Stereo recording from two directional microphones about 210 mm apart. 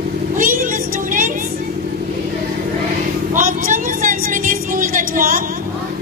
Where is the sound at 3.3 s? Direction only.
40° right (ahead or behind).